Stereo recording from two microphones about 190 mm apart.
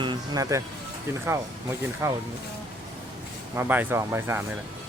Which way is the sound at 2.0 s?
15° right (ahead or behind).